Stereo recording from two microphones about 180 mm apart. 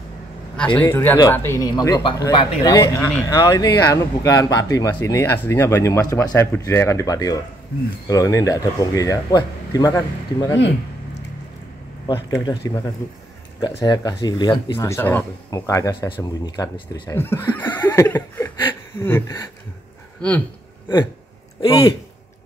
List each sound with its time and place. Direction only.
0.7 s speech: 10° left (ahead or behind)
12.3 s speech: 20° left (ahead or behind)
17.1 s speech: 10° left (ahead or behind)
21.5 s speech: 20° left (ahead or behind)